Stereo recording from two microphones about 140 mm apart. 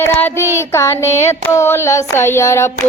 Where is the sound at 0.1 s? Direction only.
15° left (ahead or behind).